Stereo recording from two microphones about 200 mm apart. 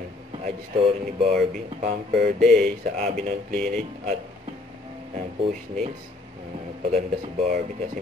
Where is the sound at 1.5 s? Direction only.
35° right (ahead or behind).